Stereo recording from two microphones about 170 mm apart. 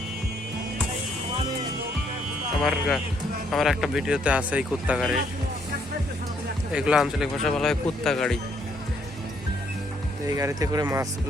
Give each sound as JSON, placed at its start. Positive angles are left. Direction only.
{"t": 2.6, "sound": "speech", "side_deg": 0}
{"t": 6.7, "sound": "speech", "side_deg": -5}
{"t": 10.2, "sound": "speech", "side_deg": -20}